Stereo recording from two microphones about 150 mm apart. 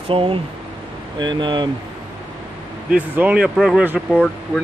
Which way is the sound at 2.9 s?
10° right (ahead or behind).